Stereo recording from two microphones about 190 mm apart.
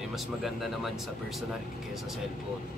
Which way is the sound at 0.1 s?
Centre (ahead or behind).